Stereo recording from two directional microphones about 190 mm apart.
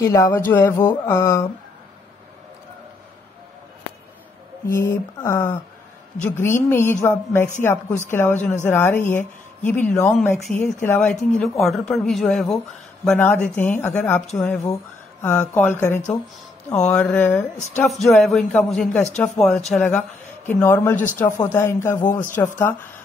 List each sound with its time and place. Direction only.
0.0 s speech: 15° left (ahead or behind)
4.6 s speech: 15° left (ahead or behind)
20.9 s speech: 40° left (ahead or behind)
21.5 s speech: 15° left (ahead or behind)